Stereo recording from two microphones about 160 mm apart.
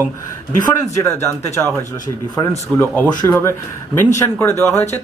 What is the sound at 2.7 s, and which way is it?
Speech, 10° left (ahead or behind).